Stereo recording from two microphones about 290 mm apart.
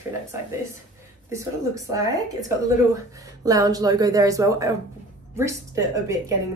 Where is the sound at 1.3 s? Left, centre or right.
Centre.